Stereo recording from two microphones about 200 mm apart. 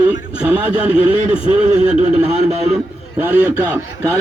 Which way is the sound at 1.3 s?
25° left (ahead or behind).